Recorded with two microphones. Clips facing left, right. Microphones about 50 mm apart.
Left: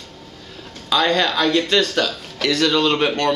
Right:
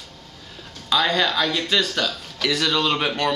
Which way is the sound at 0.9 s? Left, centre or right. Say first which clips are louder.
Left 2 dB; centre.